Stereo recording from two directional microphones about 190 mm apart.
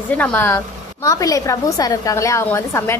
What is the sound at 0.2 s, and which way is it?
A woman's voice, 10° left (ahead or behind).